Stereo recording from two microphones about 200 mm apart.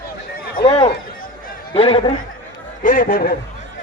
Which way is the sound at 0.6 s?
25° left (ahead or behind).